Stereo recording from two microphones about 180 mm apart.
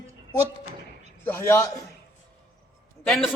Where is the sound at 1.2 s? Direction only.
15° left (ahead or behind).